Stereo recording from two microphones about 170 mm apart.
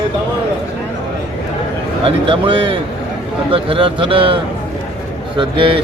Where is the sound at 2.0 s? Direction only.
30° right (ahead or behind).